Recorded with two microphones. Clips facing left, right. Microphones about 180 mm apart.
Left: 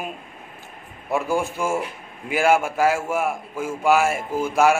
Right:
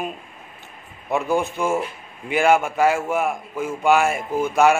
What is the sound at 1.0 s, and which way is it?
A man's voice, 5° left (ahead or behind).